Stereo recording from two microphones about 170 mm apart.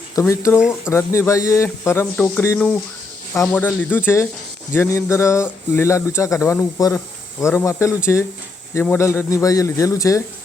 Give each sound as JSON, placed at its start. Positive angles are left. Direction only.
{"t": 0.2, "sound": "speech", "side_deg": 15}